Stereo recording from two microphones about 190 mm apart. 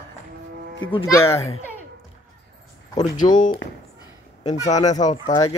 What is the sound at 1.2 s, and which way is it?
Speech, 15° left (ahead or behind).